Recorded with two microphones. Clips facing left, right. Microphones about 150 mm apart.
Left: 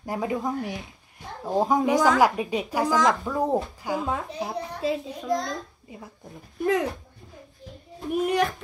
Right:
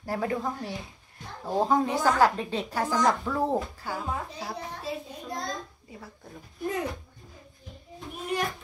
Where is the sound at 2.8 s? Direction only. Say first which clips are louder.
Left 3 dB; 90° left.